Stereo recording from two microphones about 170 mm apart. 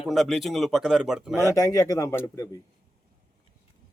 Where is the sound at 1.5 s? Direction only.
20° left (ahead or behind).